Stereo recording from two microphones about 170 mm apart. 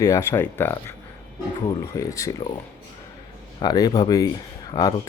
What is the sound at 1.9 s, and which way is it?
Speech, 20° left (ahead or behind).